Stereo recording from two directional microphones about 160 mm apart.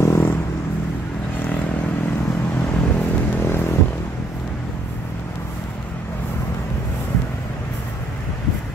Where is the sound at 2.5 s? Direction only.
10° left (ahead or behind).